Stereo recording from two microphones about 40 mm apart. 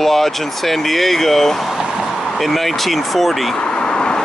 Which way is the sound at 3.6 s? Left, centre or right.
Left.